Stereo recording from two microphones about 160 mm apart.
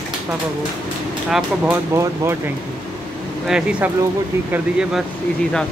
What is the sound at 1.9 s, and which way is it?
Speech, 15° right (ahead or behind).